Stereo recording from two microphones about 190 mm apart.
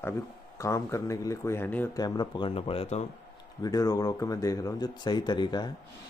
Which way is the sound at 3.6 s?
20° left (ahead or behind).